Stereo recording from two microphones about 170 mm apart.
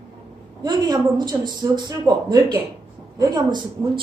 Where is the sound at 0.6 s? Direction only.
25° right (ahead or behind).